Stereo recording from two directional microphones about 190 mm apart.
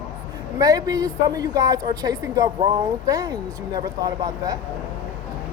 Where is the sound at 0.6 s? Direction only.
20° right (ahead or behind).